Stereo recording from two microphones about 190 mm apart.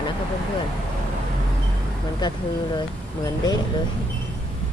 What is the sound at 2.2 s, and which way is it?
Speech, 25° left (ahead or behind).